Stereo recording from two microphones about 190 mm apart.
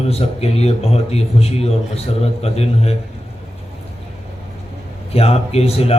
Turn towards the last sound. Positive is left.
turn(degrees=30)  # may be behind; listen again after turning